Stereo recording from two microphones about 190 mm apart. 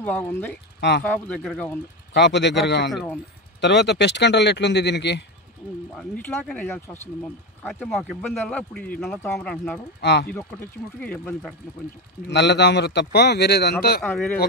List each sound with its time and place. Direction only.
0.0 s speech: 10° left (ahead or behind)
0.7 s speech: 60° left (ahead or behind)
1.1 s speech: 5° left (ahead or behind)
2.1 s speech: 65° left (ahead or behind)
2.9 s speech: centre (ahead or behind)
3.6 s speech: 65° left (ahead or behind)
5.9 s speech: 5° left (ahead or behind)
9.9 s speech: 60° left (ahead or behind)
11.0 s speech: 5° left (ahead or behind)
12.3 s speech: 65° left (ahead or behind)